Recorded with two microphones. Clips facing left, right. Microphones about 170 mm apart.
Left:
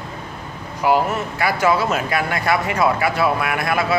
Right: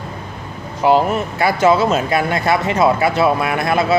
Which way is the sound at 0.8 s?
25° right (ahead or behind).